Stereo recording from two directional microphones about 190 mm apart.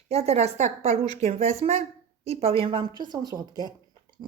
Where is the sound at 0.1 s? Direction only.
35° right (ahead or behind).